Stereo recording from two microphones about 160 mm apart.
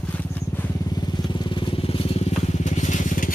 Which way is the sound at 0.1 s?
10° left (ahead or behind).